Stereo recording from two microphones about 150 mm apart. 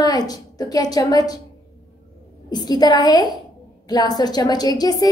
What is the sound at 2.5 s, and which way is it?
A woman's voice, 25° left (ahead or behind).